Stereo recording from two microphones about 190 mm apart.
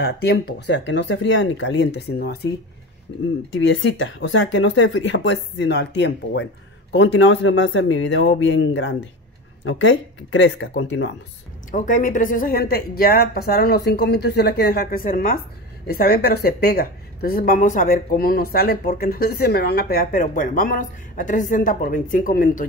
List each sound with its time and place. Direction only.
0.0 s speech: 60° left (ahead or behind)
3.1 s speech: 90° left; by 6.4 s 65° left (ahead or behind)
6.9 s speech: 80° left
9.7 s speech: 85° left; by 11.1 s 70° left (ahead or behind)
11.7 s speech: 40° left (ahead or behind)